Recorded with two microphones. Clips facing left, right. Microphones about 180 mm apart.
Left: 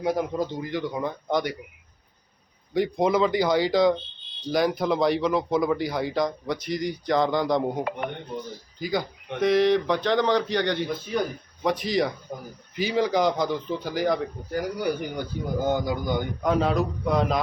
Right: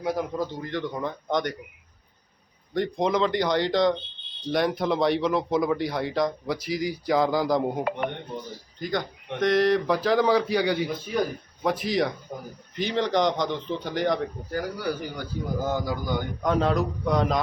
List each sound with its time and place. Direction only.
0.0 s a man's voice: 20° left (ahead or behind)
0.6 s speech: 10° left (ahead or behind)
2.7 s speech: 5° left (ahead or behind)
14.5 s a man's voice: 20° left (ahead or behind)
16.4 s speech: 5° left (ahead or behind)